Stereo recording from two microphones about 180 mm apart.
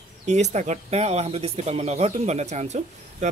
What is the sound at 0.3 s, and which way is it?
Speech, 40° right (ahead or behind).